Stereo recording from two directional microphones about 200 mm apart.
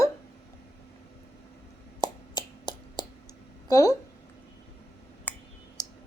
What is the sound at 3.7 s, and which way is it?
Speech, 15° left (ahead or behind).